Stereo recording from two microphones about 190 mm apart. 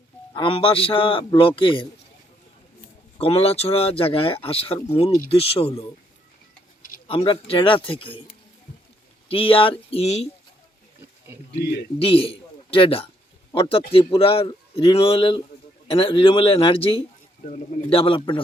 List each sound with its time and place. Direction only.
0.3 s a man's voice: 30° left (ahead or behind)
7.1 s a man's voice: 30° left (ahead or behind)
9.3 s a man's voice: 30° left (ahead or behind)
11.9 s a man's voice: 30° left (ahead or behind)